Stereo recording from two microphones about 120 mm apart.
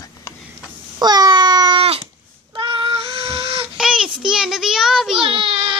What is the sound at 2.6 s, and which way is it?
Child singing, 45° right (ahead or behind).